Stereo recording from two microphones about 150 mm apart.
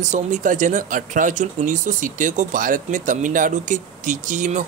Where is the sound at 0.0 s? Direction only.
55° right (ahead or behind).